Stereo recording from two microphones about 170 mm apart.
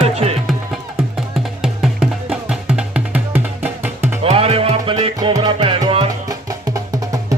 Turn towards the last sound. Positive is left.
turn(degrees=-30)  # may be behind; listen again after turning